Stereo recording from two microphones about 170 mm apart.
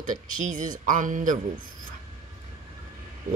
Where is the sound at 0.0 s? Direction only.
45° right (ahead or behind).